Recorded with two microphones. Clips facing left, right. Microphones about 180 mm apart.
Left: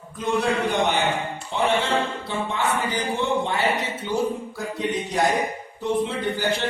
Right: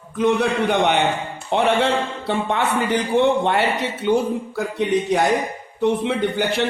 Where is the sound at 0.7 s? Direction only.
65° right (ahead or behind).